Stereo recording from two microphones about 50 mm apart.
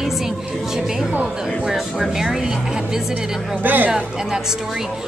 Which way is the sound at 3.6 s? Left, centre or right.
Right.